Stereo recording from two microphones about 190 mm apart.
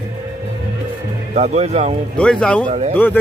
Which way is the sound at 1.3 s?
35° right (ahead or behind).